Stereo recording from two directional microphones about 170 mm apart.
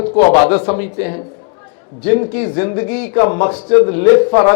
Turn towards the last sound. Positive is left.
turn(degrees=15)  # may be behind; listen again after turning